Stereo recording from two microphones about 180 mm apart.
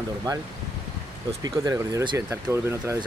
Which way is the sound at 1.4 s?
20° right (ahead or behind).